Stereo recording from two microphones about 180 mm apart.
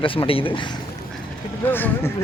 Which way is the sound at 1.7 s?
10° left (ahead or behind).